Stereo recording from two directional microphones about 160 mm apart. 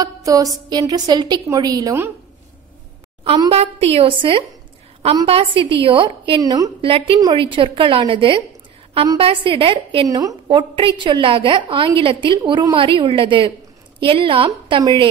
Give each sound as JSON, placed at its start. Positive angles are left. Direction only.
{"t": 0.0, "sound": "a sound", "side_deg": -20}
{"t": 0.7, "sound": "a woman's voice", "side_deg": -25}
{"t": 3.4, "sound": "a woman's voice", "side_deg": -35}
{"t": 6.8, "sound": "a woman's voice", "side_deg": -35}
{"t": 10.0, "sound": "a woman's voice", "side_deg": -20}